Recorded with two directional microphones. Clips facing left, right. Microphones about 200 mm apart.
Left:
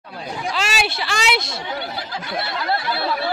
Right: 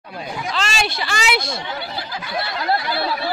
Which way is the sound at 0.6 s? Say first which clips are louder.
Right 1 dB; 5° left (ahead or behind).